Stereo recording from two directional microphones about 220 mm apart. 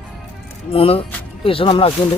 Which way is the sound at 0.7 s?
25° left (ahead or behind).